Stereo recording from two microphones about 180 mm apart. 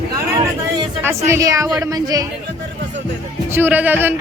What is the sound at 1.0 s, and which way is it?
A woman's voice, 15° right (ahead or behind).